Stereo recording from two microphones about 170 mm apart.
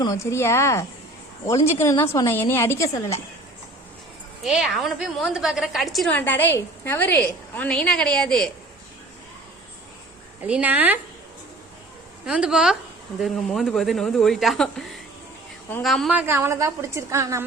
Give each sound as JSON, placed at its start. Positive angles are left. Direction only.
{"t": 0.0, "sound": "a woman's voice", "side_deg": 20}
{"t": 4.4, "sound": "speech", "side_deg": 0}
{"t": 6.1, "sound": "a woman's voice", "side_deg": 10}
{"t": 10.4, "sound": "a woman's voice", "side_deg": -10}
{"t": 12.2, "sound": "a woman's voice", "side_deg": -5}